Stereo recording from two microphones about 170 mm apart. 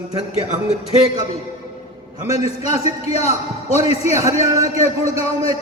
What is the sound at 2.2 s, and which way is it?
A man's voice, 40° left (ahead or behind).